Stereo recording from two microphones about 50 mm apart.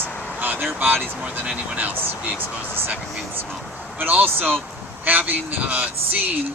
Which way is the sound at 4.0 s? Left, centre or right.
Right.